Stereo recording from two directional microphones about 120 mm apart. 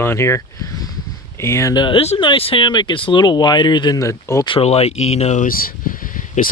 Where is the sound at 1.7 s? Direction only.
40° left (ahead or behind).